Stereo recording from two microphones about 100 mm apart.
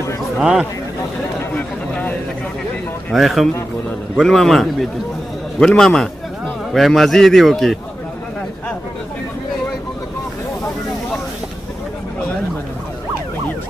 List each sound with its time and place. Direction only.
0.4 s a man's voice: 5° right (ahead or behind)
3.1 s a man's voice: centre (ahead or behind)